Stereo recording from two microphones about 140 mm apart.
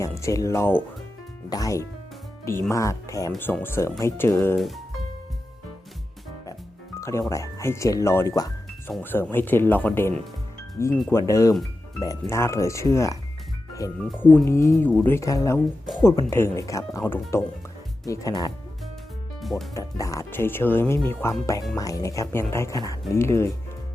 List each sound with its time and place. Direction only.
0.2 s speech: 20° left (ahead or behind)
4.5 s speech: centre (ahead or behind)
7.0 s speech: 20° left (ahead or behind)
14.2 s speech: 15° left (ahead or behind)
19.4 s music: centre (ahead or behind)
19.7 s speech: 25° left (ahead or behind)